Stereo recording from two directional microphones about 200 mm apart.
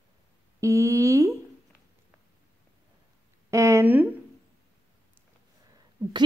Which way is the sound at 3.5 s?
15° right (ahead or behind).